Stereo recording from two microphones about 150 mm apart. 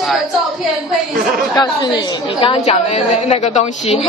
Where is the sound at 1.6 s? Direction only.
30° left (ahead or behind).